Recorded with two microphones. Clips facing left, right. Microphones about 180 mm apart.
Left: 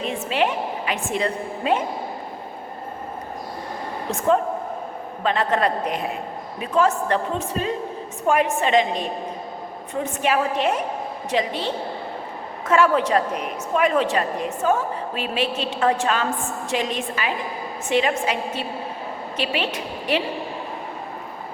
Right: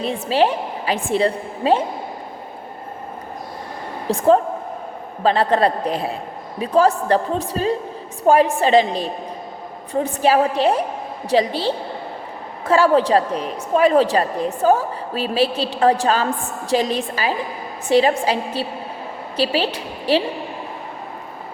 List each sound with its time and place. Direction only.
0.0 s a woman's voice: 35° right (ahead or behind)
4.1 s a woman's voice: 35° right (ahead or behind)